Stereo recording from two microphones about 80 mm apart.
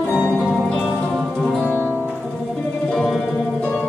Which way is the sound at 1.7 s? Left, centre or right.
Left.